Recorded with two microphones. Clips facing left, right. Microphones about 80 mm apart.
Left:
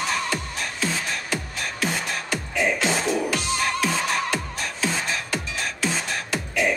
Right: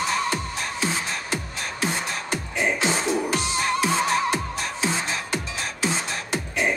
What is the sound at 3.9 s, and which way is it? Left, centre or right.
Music, right.